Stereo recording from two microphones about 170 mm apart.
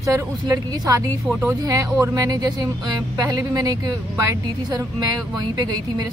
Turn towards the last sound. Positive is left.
turn(degrees=-25)  # may be behind; listen again after turning